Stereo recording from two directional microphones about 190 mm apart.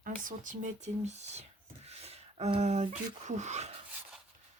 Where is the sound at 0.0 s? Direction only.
45° right (ahead or behind).